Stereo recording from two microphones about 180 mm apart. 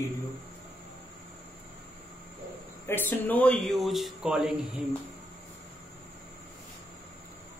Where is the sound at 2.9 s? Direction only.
15° left (ahead or behind).